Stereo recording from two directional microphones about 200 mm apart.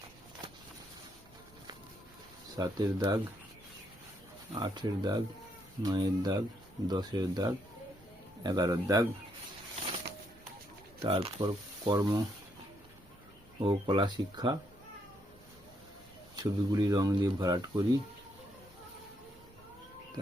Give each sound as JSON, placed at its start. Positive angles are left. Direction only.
{"t": 2.6, "sound": "speech", "side_deg": -20}
{"t": 4.6, "sound": "speech", "side_deg": -20}
{"t": 11.0, "sound": "speech", "side_deg": -25}
{"t": 13.6, "sound": "speech", "side_deg": -25}
{"t": 16.3, "sound": "speech", "side_deg": -20}